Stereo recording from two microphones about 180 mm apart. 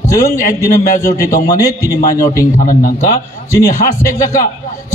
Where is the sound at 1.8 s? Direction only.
50° left (ahead or behind).